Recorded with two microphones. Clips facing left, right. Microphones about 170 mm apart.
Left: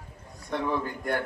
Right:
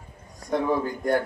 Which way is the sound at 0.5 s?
35° right (ahead or behind).